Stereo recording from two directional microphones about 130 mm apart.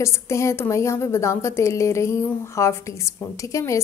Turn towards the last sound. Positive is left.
turn(degrees=25)  # may be behind; listen again after turning